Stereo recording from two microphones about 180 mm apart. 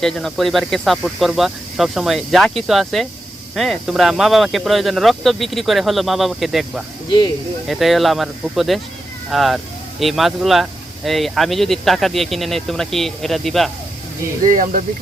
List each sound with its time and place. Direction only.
0.0 s speech: centre (ahead or behind)
14.4 s speech: 45° right (ahead or behind)